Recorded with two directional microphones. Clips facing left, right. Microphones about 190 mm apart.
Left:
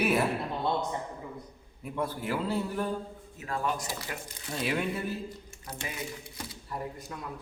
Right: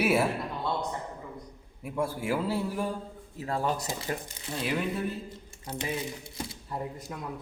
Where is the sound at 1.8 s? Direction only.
10° right (ahead or behind).